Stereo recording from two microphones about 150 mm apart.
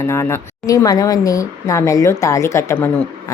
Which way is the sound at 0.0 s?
20° left (ahead or behind).